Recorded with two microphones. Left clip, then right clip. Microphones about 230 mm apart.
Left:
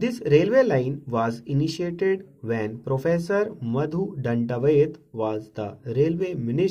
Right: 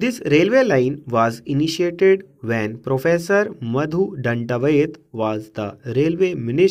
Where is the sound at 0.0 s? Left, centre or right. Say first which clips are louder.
Right 3 dB; right.